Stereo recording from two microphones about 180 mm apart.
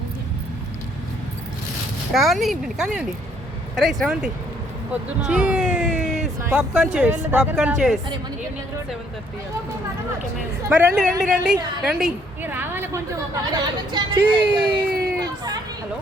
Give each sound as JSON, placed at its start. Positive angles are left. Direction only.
{"t": 2.1, "sound": "a woman's voice", "side_deg": 0}
{"t": 10.7, "sound": "a woman's voice", "side_deg": -5}
{"t": 14.8, "sound": "a sound", "side_deg": -60}